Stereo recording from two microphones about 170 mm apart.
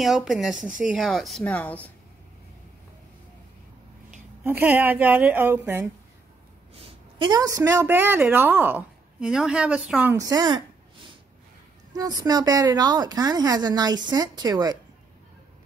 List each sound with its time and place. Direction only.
0.0 s speech: centre (ahead or behind)
0.6 s speech: 50° right (ahead or behind)
0.8 s speech: centre (ahead or behind)
4.4 s a woman's voice: 10° right (ahead or behind)
6.7 s a woman's voice: 30° right (ahead or behind)
11.9 s a woman's voice: 20° right (ahead or behind)